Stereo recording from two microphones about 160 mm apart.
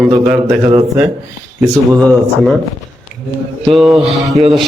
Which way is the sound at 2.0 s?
5° left (ahead or behind).